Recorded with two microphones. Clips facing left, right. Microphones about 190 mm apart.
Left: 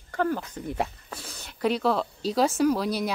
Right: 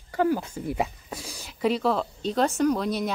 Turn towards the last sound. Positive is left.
turn(degrees=0)  # may be behind; listen again after turning